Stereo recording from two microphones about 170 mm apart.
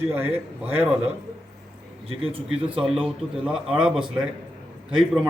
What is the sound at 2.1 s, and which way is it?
Speech, 35° right (ahead or behind).